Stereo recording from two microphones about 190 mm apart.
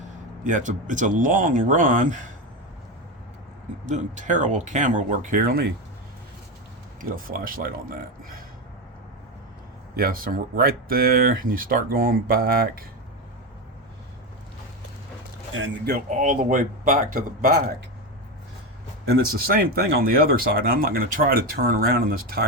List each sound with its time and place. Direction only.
0.4 s speech: 40° right (ahead or behind)
3.8 s speech: 40° right (ahead or behind)
7.0 s speech: 50° right (ahead or behind)
9.9 s speech: 50° right (ahead or behind)
15.5 s speech: 70° right (ahead or behind)
16.0 s speech: 45° right (ahead or behind)
19.0 s speech: 55° right (ahead or behind)